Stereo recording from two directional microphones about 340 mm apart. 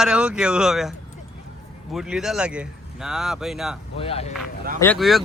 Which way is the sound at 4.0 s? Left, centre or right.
Centre.